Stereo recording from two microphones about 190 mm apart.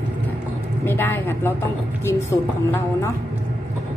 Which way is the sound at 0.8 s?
10° left (ahead or behind).